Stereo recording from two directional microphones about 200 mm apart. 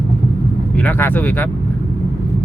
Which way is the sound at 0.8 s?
10° left (ahead or behind).